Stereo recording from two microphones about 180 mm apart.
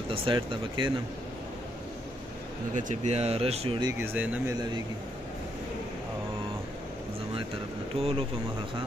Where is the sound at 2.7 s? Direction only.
40° right (ahead or behind).